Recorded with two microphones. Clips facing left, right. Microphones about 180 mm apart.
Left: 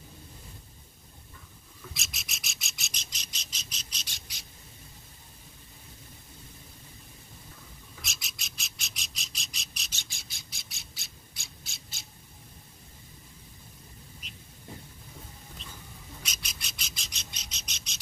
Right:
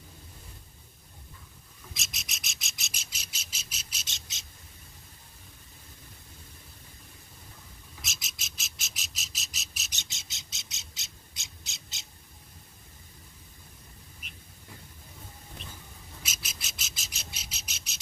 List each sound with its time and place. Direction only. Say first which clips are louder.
2.0 s bird: left 1 dB; centre (ahead or behind)
4.1 s bird: even; 20° right (ahead or behind)
8.0 s bird: right 1 dB; centre (ahead or behind)
9.9 s bird: even; 20° right (ahead or behind)
16.2 s bird: right 2 dB; 5° right (ahead or behind)